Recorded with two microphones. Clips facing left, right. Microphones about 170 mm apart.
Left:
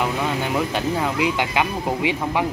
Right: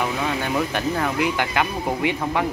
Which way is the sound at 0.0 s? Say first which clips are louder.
Left 1 dB; 15° left (ahead or behind).